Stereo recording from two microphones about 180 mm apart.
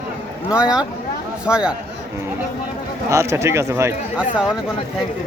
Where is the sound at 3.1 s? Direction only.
15° right (ahead or behind).